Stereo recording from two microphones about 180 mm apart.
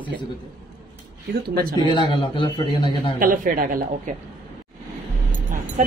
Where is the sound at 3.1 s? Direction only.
50° right (ahead or behind).